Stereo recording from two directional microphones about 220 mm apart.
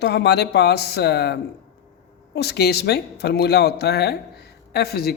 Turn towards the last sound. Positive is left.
turn(degrees=45)  # may be behind; listen again after turning